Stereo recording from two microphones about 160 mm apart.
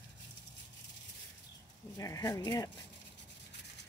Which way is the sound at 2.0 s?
20° left (ahead or behind).